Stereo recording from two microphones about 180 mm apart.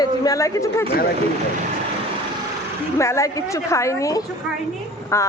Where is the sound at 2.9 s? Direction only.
15° left (ahead or behind).